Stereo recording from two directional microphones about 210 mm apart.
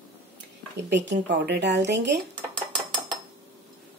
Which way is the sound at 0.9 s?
55° right (ahead or behind).